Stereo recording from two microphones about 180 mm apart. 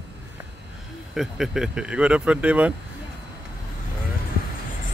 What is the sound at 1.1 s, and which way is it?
Speech, centre (ahead or behind).